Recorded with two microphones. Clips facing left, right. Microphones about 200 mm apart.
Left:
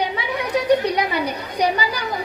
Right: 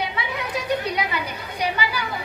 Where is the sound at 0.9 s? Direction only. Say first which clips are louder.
Left 5 dB; 40° left (ahead or behind).